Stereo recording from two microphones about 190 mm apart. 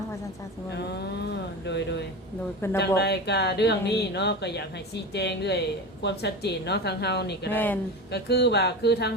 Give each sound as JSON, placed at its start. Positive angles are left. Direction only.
{"t": 0.7, "sound": "speech", "side_deg": 60}
{"t": 7.5, "sound": "speech", "side_deg": 10}
{"t": 8.1, "sound": "speech", "side_deg": 60}